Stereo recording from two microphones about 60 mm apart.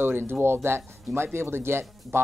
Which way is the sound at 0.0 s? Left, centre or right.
Right.